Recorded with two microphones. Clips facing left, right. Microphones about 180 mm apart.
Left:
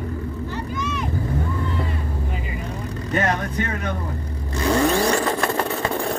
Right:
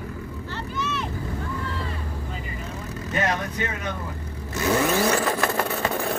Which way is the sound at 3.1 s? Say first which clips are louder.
Left 3 dB; 55° left (ahead or behind).